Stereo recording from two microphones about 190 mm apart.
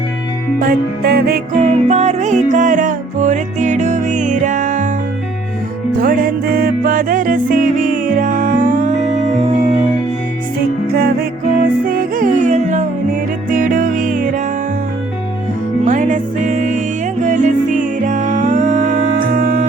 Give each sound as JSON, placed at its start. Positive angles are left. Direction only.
{"t": 0.6, "sound": "music", "side_deg": -55}
{"t": 1.6, "sound": "music", "side_deg": -35}
{"t": 6.0, "sound": "music", "side_deg": -50}
{"t": 10.9, "sound": "music", "side_deg": -55}
{"t": 15.8, "sound": "music", "side_deg": -40}